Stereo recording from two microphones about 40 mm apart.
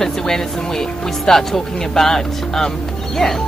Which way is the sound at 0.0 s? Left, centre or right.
Centre.